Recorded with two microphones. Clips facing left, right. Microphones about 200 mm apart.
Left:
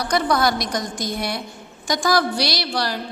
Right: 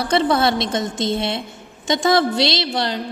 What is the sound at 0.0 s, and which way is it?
A woman's voice, 25° right (ahead or behind).